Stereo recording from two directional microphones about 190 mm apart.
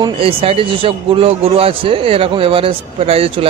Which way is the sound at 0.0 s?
30° right (ahead or behind).